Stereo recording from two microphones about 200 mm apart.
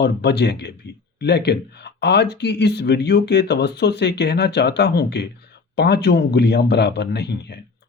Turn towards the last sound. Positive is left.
turn(degrees=55)  # may be behind; listen again after turning